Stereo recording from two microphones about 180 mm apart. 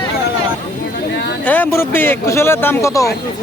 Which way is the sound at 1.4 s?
10° left (ahead or behind).